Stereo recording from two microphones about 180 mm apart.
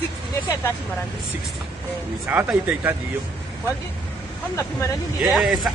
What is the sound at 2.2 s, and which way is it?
Speech, 10° right (ahead or behind).